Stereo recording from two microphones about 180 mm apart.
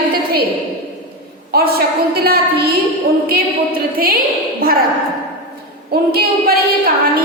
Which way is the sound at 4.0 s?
55° right (ahead or behind).